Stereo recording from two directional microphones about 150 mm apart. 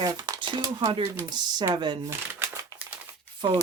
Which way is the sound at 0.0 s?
25° right (ahead or behind).